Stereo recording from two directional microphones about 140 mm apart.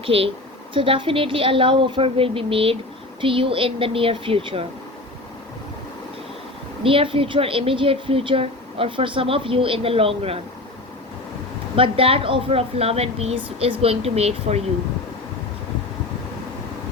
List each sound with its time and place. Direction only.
0.0 s a woman's voice: 45° right (ahead or behind)
6.8 s a woman's voice: 40° right (ahead or behind)
11.8 s speech: 40° right (ahead or behind)